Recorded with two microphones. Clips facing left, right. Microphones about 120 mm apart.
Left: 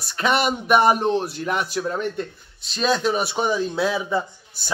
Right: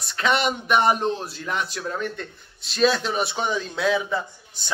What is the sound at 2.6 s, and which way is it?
A man's voice, centre (ahead or behind).